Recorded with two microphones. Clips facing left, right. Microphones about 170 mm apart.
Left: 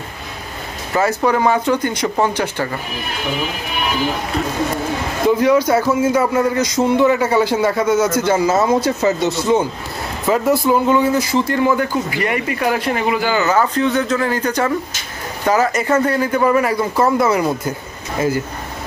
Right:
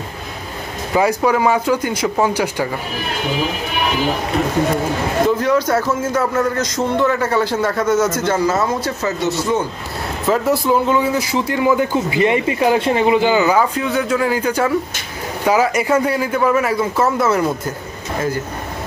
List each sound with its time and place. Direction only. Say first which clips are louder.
0.9 s speech: right 1 dB; 10° right (ahead or behind)
5.4 s a man's voice: left 2 dB; 10° left (ahead or behind)
8.5 s speech: left 3 dB; 25° left (ahead or behind)
10.2 s speech: left 1 dB; centre (ahead or behind)